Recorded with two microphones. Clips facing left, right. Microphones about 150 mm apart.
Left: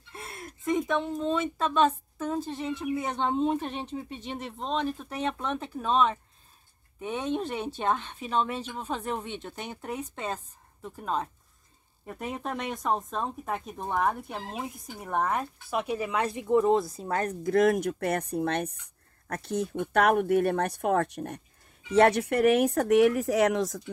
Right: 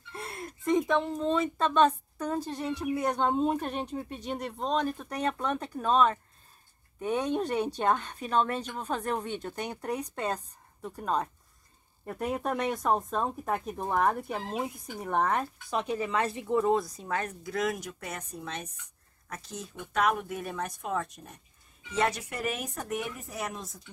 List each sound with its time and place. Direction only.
0.1 s a woman's voice: centre (ahead or behind); by 23.8 s 90° left